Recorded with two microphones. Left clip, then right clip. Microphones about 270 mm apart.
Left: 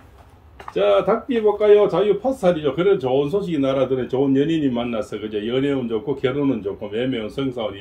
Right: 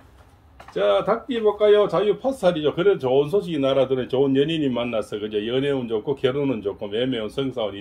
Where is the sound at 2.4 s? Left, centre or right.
Right.